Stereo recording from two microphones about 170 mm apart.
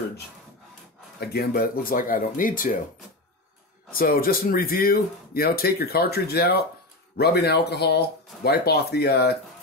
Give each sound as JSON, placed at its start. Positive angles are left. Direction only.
{"t": 1.2, "sound": "speech", "side_deg": 65}
{"t": 4.0, "sound": "speech", "side_deg": 60}